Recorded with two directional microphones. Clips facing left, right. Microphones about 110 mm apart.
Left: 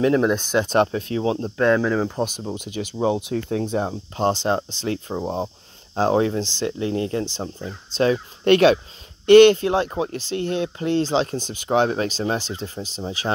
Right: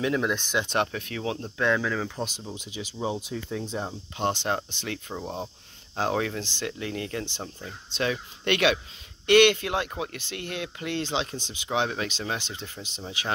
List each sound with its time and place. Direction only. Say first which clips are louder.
0.0 s speech: left 8 dB; 40° left (ahead or behind)
1.6 s speech: left 7 dB; 40° left (ahead or behind); by 3.9 s 60° left (ahead or behind)
4.2 s speech: left 6 dB; 35° left (ahead or behind)